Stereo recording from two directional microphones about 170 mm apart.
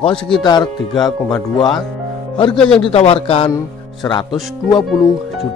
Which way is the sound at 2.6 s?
5° left (ahead or behind).